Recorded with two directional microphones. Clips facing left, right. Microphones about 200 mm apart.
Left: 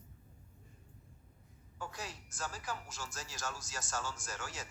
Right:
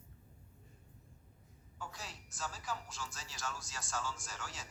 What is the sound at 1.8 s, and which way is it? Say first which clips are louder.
A woman's voice: left 4 dB; 50° left (ahead or behind).